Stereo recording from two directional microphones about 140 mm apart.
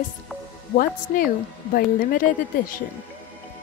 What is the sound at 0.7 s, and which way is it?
Speech, 90° left.